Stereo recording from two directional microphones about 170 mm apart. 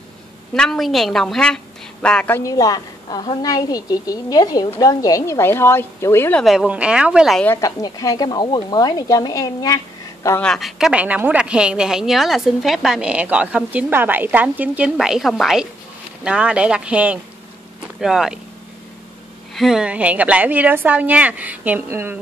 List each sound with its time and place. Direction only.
0.6 s a woman's voice: centre (ahead or behind)
6.4 s a woman's voice: centre (ahead or behind)
7.4 s a woman's voice: 20° left (ahead or behind)
10.4 s a woman's voice: centre (ahead or behind)
19.5 s a woman's voice: centre (ahead or behind)